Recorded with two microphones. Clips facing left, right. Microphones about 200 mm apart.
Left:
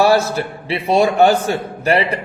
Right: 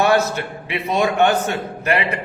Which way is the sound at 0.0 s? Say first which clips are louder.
Left 3 dB; 35° left (ahead or behind).